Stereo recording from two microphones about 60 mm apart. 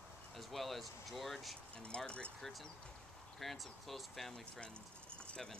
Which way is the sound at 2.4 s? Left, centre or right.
Centre.